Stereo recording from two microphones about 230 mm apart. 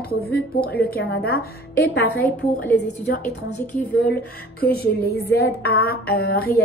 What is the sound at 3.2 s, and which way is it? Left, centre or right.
Speech, centre.